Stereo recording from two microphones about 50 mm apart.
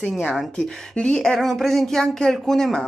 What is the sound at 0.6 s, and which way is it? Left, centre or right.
Speech, centre.